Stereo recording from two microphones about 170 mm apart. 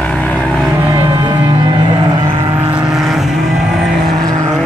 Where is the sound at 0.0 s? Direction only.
10° left (ahead or behind).